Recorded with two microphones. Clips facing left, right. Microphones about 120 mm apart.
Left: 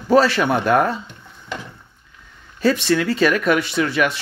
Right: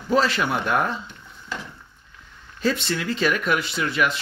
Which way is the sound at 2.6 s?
70° left (ahead or behind).